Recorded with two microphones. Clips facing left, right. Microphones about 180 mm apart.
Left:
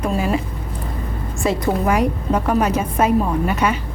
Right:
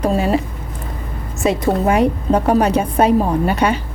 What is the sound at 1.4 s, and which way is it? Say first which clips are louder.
A woman's voice: right 3 dB; 25° right (ahead or behind).